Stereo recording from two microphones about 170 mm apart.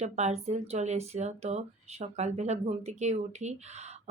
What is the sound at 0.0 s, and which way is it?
Speech, 40° right (ahead or behind).